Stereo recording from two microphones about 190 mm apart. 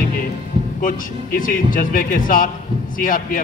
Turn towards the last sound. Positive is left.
turn(degrees=45)  # may be behind; listen again after turning